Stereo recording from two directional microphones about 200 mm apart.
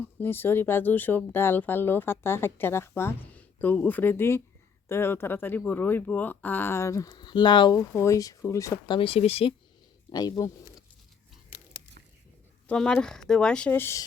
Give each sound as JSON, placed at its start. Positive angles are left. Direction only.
{"t": 0.0, "sound": "speech", "side_deg": 10}
{"t": 9.0, "sound": "speech", "side_deg": 30}
{"t": 12.6, "sound": "speech", "side_deg": 5}